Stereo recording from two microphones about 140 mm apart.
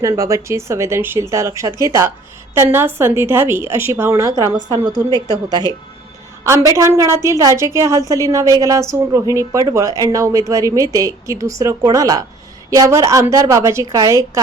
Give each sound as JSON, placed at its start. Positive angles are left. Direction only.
{"t": 0.0, "sound": "a woman's voice", "side_deg": -25}
{"t": 6.4, "sound": "speech", "side_deg": -20}